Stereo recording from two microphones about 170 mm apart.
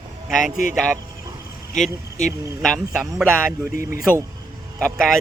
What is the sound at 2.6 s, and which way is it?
Speech, centre (ahead or behind).